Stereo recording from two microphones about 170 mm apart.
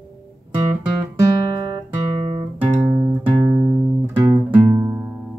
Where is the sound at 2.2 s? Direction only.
25° right (ahead or behind).